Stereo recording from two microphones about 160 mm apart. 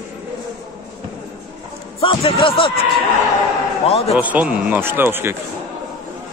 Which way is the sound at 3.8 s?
40° left (ahead or behind).